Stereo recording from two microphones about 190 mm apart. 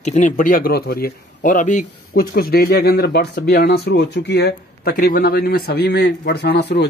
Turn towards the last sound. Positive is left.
turn(degrees=60)  # may be behind; listen again after turning